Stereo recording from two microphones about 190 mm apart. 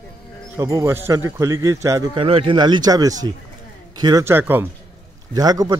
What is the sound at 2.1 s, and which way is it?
A man's voice, 30° right (ahead or behind).